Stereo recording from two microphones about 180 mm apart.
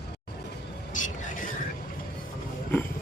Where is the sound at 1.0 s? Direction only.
45° left (ahead or behind).